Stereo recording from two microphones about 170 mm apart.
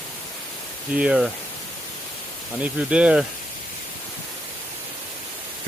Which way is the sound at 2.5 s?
5° right (ahead or behind).